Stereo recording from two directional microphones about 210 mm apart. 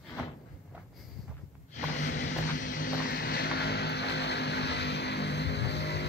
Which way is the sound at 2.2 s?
35° left (ahead or behind).